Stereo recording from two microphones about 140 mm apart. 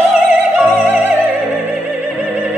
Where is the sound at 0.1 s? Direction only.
10° right (ahead or behind).